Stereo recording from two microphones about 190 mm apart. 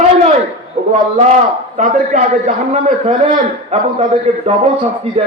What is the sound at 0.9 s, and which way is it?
A man's voice, 40° right (ahead or behind).